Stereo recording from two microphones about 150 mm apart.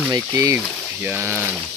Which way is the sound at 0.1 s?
20° right (ahead or behind).